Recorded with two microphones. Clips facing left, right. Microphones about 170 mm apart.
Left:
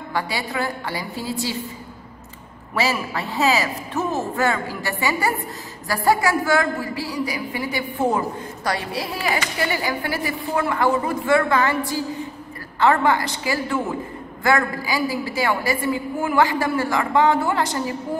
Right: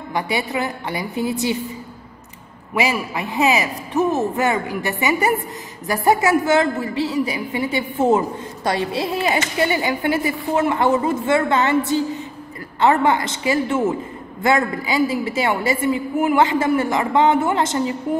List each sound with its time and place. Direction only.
0.1 s speech: 20° right (ahead or behind)
2.7 s speech: 15° right (ahead or behind)